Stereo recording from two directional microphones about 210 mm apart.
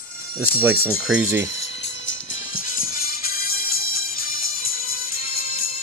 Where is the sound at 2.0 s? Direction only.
65° left (ahead or behind).